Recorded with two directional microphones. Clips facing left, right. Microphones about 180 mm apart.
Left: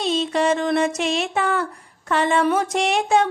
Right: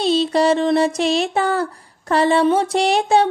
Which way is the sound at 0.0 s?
35° right (ahead or behind).